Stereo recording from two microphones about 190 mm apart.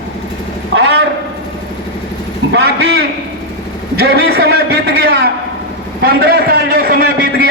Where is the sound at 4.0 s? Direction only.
55° right (ahead or behind).